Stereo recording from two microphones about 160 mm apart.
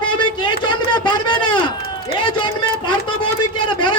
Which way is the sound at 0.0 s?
30° left (ahead or behind).